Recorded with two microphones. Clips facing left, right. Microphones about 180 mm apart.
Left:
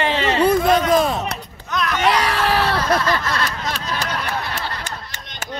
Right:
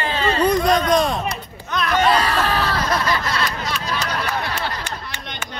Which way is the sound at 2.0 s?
80° left.